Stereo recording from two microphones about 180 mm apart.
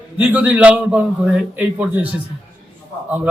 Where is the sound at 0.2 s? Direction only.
10° right (ahead or behind).